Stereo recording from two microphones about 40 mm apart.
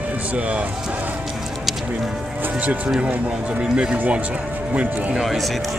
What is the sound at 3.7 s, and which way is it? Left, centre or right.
Speech, right.